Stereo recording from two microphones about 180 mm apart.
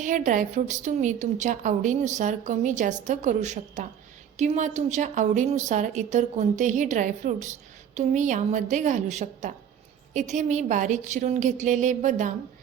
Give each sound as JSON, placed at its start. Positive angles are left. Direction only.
{"t": 0.0, "sound": "a woman's voice", "side_deg": -45}